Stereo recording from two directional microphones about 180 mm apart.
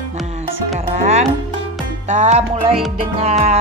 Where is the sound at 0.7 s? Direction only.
35° right (ahead or behind).